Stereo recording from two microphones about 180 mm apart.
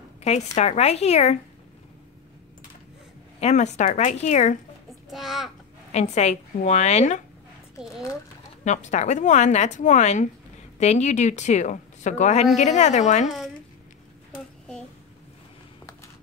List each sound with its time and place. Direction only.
0.6 s speech: 35° left (ahead or behind)
3.3 s speech: 40° left (ahead or behind)
5.1 s a child's voice: centre (ahead or behind)
5.9 s speech: 40° left (ahead or behind)
8.6 s speech: 40° left (ahead or behind)